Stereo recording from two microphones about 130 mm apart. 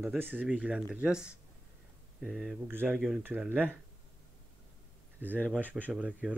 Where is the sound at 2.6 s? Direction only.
15° right (ahead or behind).